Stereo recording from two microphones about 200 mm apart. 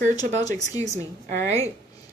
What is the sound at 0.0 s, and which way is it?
Speech, 35° right (ahead or behind).